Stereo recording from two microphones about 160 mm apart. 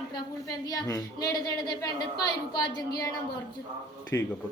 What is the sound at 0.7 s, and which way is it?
A woman's voice, 20° left (ahead or behind).